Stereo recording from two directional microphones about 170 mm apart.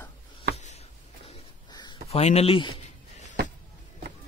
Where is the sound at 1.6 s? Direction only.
25° left (ahead or behind).